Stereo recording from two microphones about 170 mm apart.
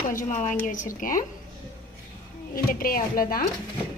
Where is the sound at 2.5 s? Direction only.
60° left (ahead or behind).